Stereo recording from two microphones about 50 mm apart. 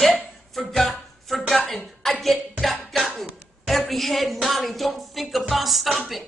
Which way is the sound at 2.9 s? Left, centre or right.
Centre.